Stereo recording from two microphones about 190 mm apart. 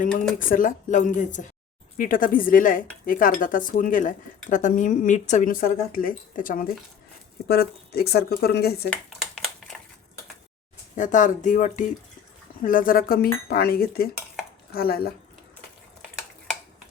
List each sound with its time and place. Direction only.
0.3 s speech: 45° left (ahead or behind)
8.9 s a sound: centre (ahead or behind)
10.9 s speech: 40° left (ahead or behind)